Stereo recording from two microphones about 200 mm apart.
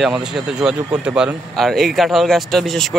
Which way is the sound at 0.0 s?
Centre (ahead or behind).